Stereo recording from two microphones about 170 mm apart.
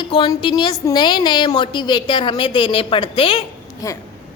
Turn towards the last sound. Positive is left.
turn(degrees=20)  # may be behind; listen again after turning